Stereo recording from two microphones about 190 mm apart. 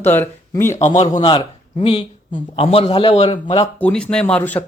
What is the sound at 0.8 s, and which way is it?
A man's voice, 40° left (ahead or behind).